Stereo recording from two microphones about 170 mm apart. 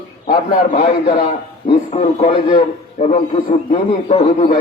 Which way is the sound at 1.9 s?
35° left (ahead or behind).